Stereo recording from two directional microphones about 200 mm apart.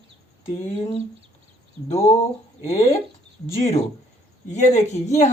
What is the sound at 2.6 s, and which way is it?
Speech, 35° left (ahead or behind).